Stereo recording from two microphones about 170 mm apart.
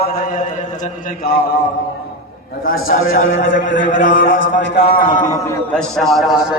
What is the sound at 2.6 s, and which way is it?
Speech, 55° left (ahead or behind).